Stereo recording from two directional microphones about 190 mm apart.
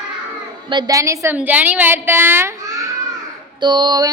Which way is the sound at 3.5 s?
25° right (ahead or behind).